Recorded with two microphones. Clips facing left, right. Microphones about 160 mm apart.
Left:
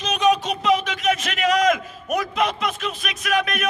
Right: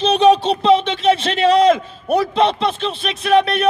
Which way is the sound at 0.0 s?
30° right (ahead or behind).